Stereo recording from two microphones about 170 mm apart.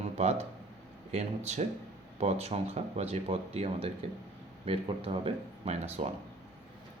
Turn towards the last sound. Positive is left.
turn(degrees=-45)  # may be behind; listen again after turning